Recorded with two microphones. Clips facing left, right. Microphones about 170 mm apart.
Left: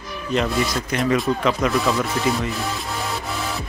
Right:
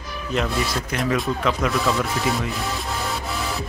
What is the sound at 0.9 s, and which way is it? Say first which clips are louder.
Speech: left 3 dB; centre (ahead or behind).